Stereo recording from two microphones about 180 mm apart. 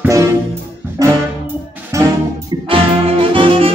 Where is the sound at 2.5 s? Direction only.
30° right (ahead or behind).